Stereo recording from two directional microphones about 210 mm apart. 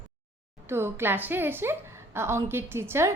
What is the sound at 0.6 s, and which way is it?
A woman's voice, 10° right (ahead or behind).